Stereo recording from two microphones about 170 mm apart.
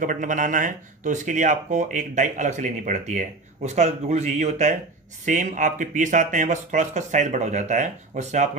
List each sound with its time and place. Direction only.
0.0 s speech: 50° right (ahead or behind)